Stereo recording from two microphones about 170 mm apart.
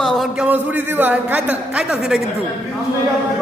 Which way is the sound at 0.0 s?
Centre (ahead or behind).